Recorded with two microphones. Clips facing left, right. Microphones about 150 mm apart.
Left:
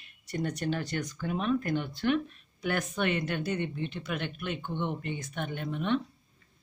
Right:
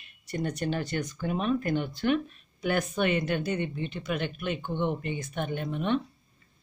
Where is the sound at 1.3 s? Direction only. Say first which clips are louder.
Right 1 dB; 10° right (ahead or behind).